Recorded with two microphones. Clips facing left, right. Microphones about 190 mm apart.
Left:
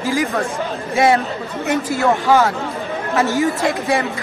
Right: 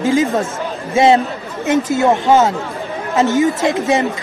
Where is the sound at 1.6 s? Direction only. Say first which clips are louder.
Right 4 dB; 20° right (ahead or behind).